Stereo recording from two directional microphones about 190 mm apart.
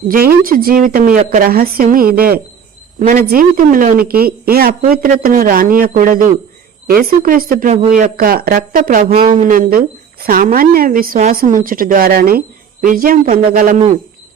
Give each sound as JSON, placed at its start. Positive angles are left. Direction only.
{"t": 0.1, "sound": "speech", "side_deg": -50}
{"t": 7.7, "sound": "speech", "side_deg": -35}
{"t": 8.1, "sound": "speech", "side_deg": -50}
{"t": 9.1, "sound": "speech", "side_deg": -30}
{"t": 9.4, "sound": "speech", "side_deg": -45}